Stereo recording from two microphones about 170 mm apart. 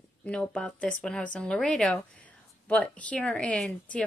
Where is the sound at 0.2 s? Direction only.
5° left (ahead or behind).